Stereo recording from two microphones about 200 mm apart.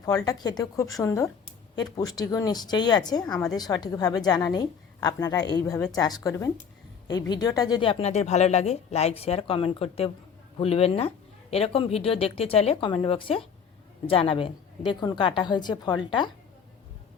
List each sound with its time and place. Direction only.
0.0 s a woman's voice: 20° left (ahead or behind)